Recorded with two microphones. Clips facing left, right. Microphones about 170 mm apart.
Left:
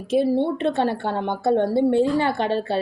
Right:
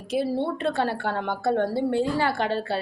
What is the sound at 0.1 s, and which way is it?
A woman's voice, 20° left (ahead or behind).